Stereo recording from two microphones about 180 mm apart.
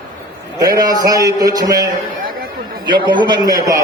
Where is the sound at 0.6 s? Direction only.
20° right (ahead or behind).